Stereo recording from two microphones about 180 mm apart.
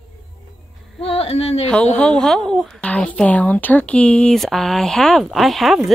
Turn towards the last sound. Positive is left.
turn(degrees=0)  # may be behind; listen again after turning